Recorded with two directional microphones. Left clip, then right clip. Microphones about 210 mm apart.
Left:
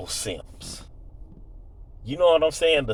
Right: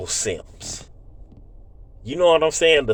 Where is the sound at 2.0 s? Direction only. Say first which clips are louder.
Right 2 dB; 40° right (ahead or behind).